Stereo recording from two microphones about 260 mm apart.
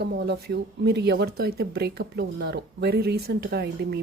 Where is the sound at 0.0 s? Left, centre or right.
Right.